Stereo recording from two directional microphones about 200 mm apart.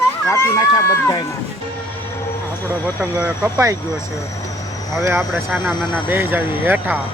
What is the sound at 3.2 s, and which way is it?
Speech, 15° right (ahead or behind).